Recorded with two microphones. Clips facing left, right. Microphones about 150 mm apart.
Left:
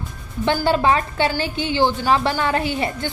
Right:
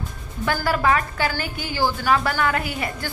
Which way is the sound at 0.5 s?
25° left (ahead or behind).